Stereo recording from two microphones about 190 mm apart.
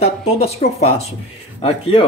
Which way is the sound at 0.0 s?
35° left (ahead or behind).